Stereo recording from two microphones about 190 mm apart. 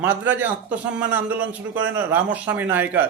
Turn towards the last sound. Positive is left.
turn(degrees=-10)  # may be behind; listen again after turning